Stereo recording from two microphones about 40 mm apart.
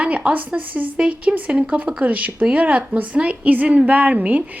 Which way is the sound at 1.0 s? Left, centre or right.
Right.